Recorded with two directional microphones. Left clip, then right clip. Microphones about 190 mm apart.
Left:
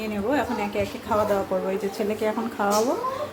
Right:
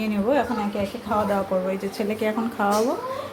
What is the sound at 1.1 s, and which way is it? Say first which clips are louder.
Speech: even; 5° right (ahead or behind).